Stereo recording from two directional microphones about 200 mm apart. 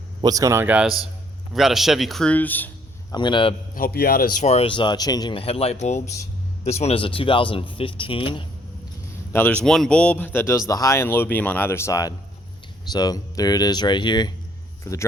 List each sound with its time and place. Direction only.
0.2 s a man's voice: 20° right (ahead or behind); by 2.6 s 10° left (ahead or behind)
3.1 s speech: 25° left (ahead or behind)
3.8 s a man's voice: 50° left (ahead or behind)
4.4 s speech: 30° left (ahead or behind)
9.3 s a man's voice: 10° left (ahead or behind)